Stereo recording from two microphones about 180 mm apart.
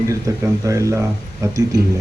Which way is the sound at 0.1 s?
15° right (ahead or behind).